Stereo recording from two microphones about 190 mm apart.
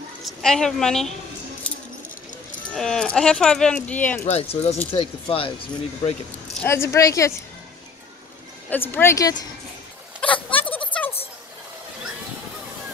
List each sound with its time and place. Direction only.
0.2 s speech: centre (ahead or behind)
1.6 s keys jangling: 5° left (ahead or behind)
2.7 s speech: centre (ahead or behind)
4.3 s speech: 30° left (ahead or behind)
6.6 s speech: 15° left (ahead or behind)
8.6 s speech: 10° left (ahead or behind)
10.2 s a sound: 10° left (ahead or behind)